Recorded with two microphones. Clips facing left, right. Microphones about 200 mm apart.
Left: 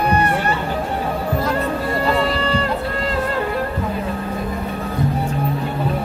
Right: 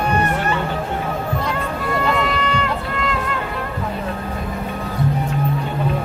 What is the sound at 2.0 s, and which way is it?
Music, 35° left (ahead or behind).